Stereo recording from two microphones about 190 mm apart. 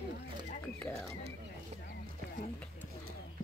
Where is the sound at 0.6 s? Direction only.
5° left (ahead or behind).